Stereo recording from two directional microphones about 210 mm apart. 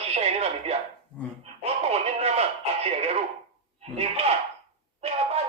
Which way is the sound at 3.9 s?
30° right (ahead or behind).